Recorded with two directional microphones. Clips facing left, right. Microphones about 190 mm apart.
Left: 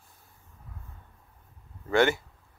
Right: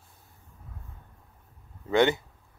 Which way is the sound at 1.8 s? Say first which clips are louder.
Right 1 dB; 20° right (ahead or behind).